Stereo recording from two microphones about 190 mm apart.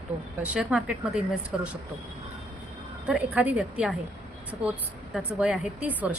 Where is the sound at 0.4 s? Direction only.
5° right (ahead or behind).